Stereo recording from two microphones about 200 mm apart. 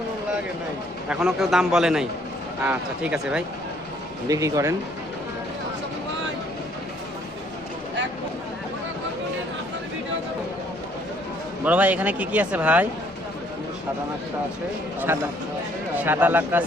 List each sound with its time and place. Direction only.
1.0 s a man's voice: 5° right (ahead or behind)
4.3 s a man's voice: 15° right (ahead or behind)
11.6 s a man's voice: 5° right (ahead or behind)
16.0 s a man's voice: 10° right (ahead or behind)